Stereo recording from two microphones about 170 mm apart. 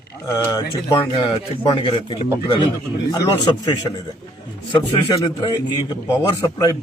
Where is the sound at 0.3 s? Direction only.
20° left (ahead or behind).